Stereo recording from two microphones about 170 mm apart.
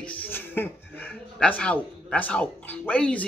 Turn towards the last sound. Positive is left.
turn(degrees=10)  # may be behind; listen again after turning